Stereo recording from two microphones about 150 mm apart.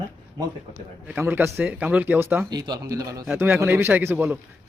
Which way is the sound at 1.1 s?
15° right (ahead or behind).